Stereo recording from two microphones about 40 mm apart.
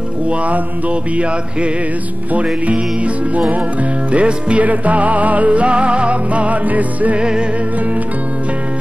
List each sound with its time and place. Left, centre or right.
0.3 s music: right
4.1 s music: right
4.6 s music: right
7.2 s music: right